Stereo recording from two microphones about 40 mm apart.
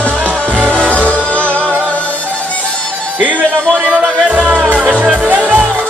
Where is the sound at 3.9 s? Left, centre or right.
Right.